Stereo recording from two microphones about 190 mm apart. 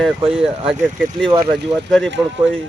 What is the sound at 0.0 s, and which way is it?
Speech, centre (ahead or behind).